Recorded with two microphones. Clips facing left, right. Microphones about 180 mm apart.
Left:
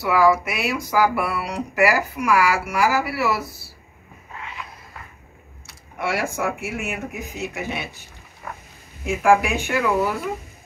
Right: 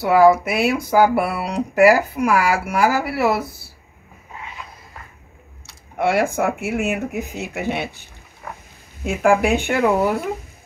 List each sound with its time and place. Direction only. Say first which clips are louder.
0.0 s speech: right 5 dB; 55° right (ahead or behind)
0.9 s music: right 4 dB; 25° right (ahead or behind)
1.2 s speech: right 3 dB; 55° right (ahead or behind)
5.9 s speech: right 6 dB; 60° right (ahead or behind)
9.0 s speech: right 1 dB; 65° right (ahead or behind)